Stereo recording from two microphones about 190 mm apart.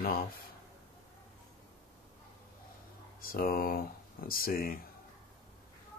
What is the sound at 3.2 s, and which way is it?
Speech, 50° left (ahead or behind).